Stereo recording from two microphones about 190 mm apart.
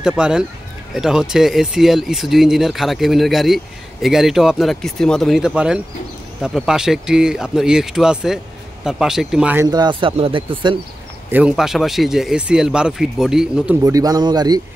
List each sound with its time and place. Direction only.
0.0 s speech: 5° right (ahead or behind)
9.7 s speech: 20° right (ahead or behind)
11.2 s speech: 5° right (ahead or behind)
13.8 s speech: 20° right (ahead or behind)